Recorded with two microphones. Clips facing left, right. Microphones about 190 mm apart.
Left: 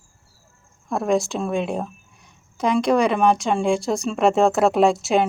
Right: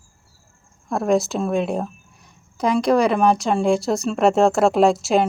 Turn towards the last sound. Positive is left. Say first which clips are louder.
# right 1 dB
turn(degrees=0)  # may be behind; listen again after turning